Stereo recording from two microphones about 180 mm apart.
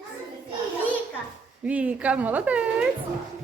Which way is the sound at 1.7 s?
10° right (ahead or behind).